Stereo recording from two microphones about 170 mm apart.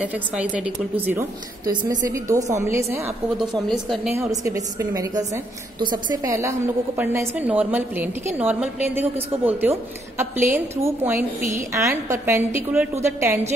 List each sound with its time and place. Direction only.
0.0 s a woman's voice: 5° right (ahead or behind)
1.7 s a woman's voice: 25° right (ahead or behind)
3.3 s speech: 5° left (ahead or behind)
4.2 s a woman's voice: 20° right (ahead or behind)